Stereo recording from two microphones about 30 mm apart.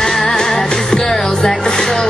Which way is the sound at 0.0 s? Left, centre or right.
Centre.